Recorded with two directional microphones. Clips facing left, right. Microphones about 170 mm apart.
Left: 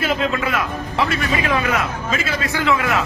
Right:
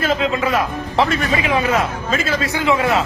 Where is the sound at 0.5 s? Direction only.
35° right (ahead or behind).